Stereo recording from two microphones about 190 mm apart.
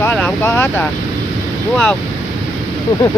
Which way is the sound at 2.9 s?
20° left (ahead or behind).